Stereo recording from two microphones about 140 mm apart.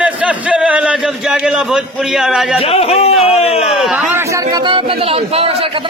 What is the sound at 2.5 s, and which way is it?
Speech, 45° left (ahead or behind).